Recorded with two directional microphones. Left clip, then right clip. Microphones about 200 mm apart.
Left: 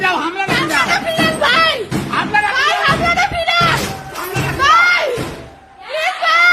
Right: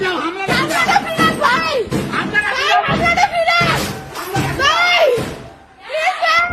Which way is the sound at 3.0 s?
Centre (ahead or behind).